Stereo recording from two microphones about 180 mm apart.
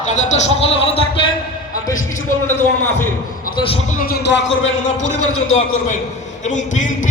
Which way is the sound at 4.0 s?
60° left (ahead or behind).